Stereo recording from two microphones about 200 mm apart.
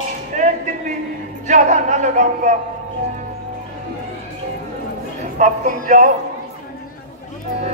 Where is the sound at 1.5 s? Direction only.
35° right (ahead or behind).